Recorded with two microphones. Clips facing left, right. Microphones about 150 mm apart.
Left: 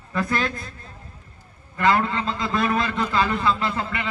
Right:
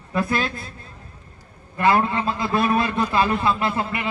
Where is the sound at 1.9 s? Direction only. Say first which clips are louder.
Right 2 dB; 20° right (ahead or behind).